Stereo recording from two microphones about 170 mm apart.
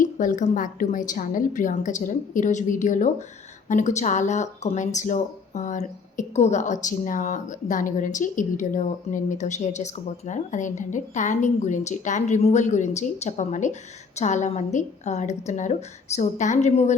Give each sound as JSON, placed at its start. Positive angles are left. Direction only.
{"t": 0.0, "sound": "speech", "side_deg": 50}